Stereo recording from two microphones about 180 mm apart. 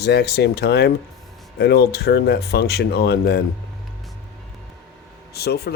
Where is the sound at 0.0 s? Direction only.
65° left (ahead or behind).